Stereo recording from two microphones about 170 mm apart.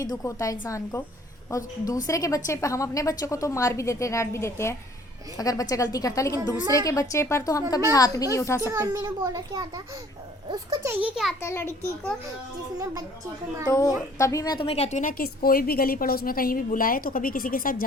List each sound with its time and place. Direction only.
0.0 s a woman's voice: 20° left (ahead or behind)
8.6 s a child's voice: 20° right (ahead or behind)
11.0 s a child's voice: 5° right (ahead or behind)
11.3 s a woman's voice: 15° left (ahead or behind)
12.8 s a child's voice: 20° right (ahead or behind)
13.7 s a woman's voice: 20° left (ahead or behind); by 17.8 s 55° left (ahead or behind)